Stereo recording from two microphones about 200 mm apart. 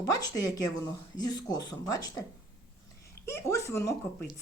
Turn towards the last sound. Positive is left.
turn(degrees=15)  # may be behind; listen again after turning